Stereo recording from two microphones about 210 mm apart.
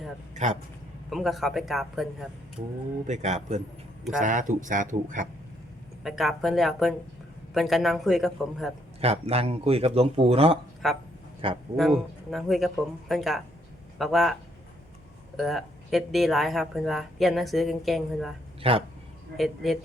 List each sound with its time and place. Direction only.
0.4 s speech: 35° right (ahead or behind)
1.1 s speech: centre (ahead or behind)
3.1 s speech: 35° right (ahead or behind)
6.0 s speech: centre (ahead or behind)
9.0 s speech: 30° right (ahead or behind)
10.8 s speech: centre (ahead or behind)
15.4 s speech: centre (ahead or behind)
18.6 s speech: 25° right (ahead or behind)
19.4 s speech: centre (ahead or behind)